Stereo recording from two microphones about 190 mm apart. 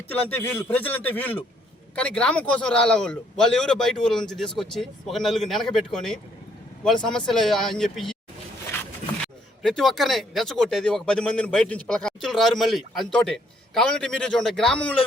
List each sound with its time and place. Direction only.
0.1 s a man's voice: 10° left (ahead or behind)
7.3 s speech: centre (ahead or behind)
9.6 s speech: centre (ahead or behind)